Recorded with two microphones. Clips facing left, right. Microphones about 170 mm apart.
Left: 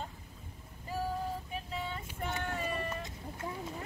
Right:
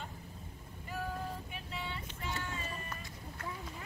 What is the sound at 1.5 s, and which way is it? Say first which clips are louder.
Vehicle: left 4 dB; 40° left (ahead or behind).